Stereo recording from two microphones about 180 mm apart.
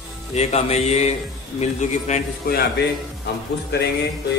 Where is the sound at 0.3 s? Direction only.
35° left (ahead or behind).